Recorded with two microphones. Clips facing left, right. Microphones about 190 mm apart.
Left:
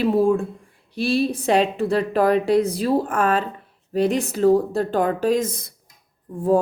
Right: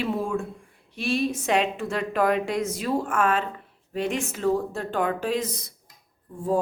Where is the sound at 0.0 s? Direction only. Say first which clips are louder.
Left 9 dB; 35° left (ahead or behind).